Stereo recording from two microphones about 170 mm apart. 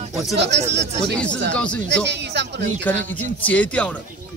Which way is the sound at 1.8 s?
90° right.